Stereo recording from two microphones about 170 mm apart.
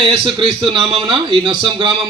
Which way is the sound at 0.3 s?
25° right (ahead or behind).